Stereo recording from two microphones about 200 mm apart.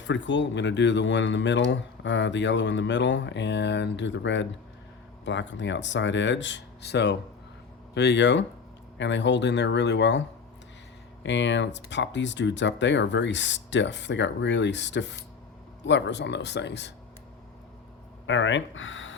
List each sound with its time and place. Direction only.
0.0 s speech: 65° left (ahead or behind)
18.3 s speech: 70° left (ahead or behind)